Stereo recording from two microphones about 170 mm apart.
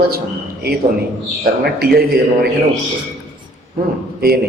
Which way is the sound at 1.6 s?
65° right (ahead or behind).